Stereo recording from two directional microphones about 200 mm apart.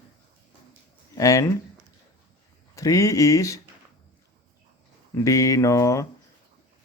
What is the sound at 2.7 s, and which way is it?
Mantra, 15° left (ahead or behind).